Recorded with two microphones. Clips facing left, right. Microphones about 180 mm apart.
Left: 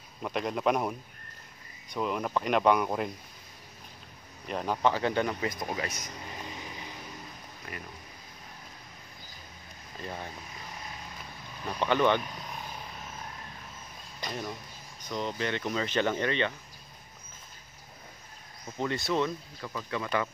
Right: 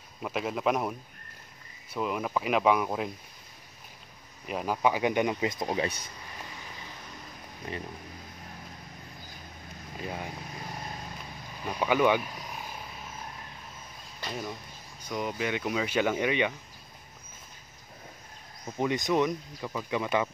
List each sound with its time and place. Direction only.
0.2 s speech: 5° right (ahead or behind)
4.5 s speech: 5° right (ahead or behind); by 6.1 s 30° right (ahead or behind)
9.9 s speech: 10° right (ahead or behind)
11.6 s speech: 10° right (ahead or behind)
14.2 s speech: 5° right (ahead or behind)
18.8 s speech: 15° right (ahead or behind)